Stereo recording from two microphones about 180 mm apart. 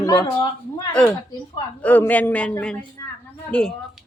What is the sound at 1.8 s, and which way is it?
Speech, 10° left (ahead or behind).